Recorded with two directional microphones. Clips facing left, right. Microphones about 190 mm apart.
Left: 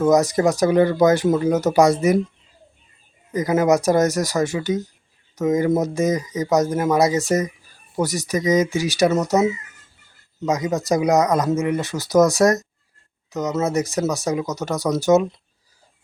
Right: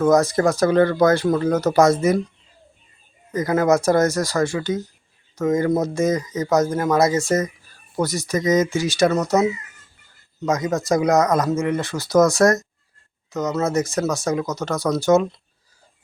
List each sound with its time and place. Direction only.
0.0 s speech: 15° left (ahead or behind)
3.3 s speech: 15° left (ahead or behind)